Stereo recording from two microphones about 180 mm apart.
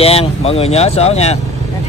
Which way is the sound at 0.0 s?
35° left (ahead or behind).